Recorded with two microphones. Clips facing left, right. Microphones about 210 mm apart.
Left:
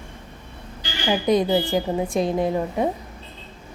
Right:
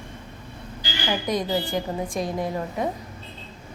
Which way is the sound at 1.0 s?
25° left (ahead or behind).